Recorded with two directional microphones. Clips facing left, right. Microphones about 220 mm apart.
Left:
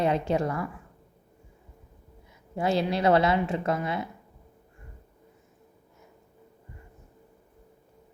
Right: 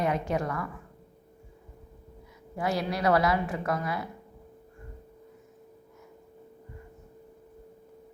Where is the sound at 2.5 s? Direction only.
25° left (ahead or behind).